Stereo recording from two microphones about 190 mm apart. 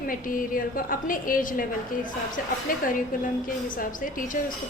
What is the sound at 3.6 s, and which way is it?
Speech, 45° left (ahead or behind).